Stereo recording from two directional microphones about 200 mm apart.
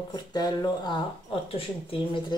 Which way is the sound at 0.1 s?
20° left (ahead or behind).